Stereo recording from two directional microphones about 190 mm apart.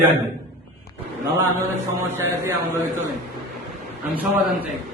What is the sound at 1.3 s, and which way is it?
A man's voice, 10° right (ahead or behind).